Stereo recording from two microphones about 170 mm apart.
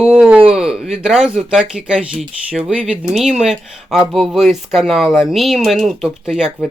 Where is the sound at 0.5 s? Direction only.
5° right (ahead or behind).